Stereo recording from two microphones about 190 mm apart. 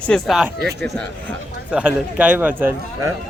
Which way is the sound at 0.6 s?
60° right (ahead or behind).